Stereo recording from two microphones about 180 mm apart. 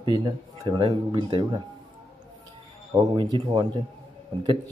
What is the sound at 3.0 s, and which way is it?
Speech, 25° right (ahead or behind).